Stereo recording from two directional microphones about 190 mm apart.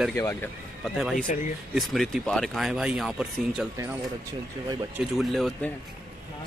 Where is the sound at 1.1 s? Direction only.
45° left (ahead or behind).